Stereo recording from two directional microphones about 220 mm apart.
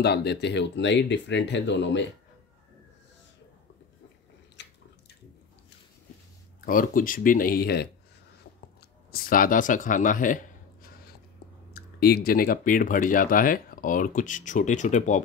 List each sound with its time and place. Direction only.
0.0 s speech: 50° left (ahead or behind)
4.6 s drip: 50° left (ahead or behind)
6.6 s speech: 40° left (ahead or behind)
9.1 s speech: 40° left (ahead or behind)